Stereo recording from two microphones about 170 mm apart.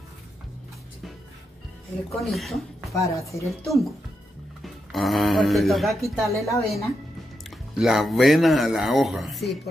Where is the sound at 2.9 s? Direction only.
20° left (ahead or behind).